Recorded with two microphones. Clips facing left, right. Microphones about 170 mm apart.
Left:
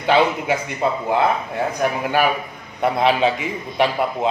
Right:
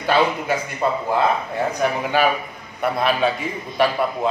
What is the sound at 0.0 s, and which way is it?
Speech, 20° left (ahead or behind).